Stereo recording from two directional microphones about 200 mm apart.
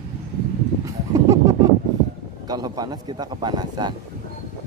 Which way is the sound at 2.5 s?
20° right (ahead or behind).